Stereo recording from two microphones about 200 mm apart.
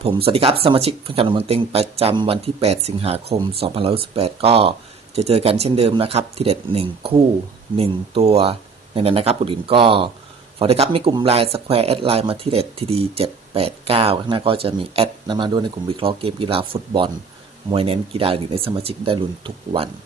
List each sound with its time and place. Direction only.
0.0 s speech: 30° right (ahead or behind)